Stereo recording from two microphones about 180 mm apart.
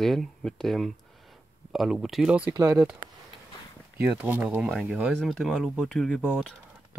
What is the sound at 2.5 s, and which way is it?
Speech, 15° right (ahead or behind).